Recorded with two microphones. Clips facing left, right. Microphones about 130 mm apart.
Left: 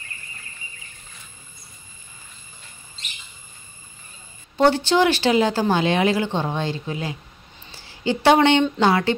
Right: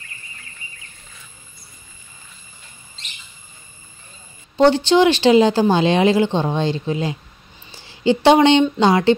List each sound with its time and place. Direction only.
4.6 s a woman's voice: 20° right (ahead or behind)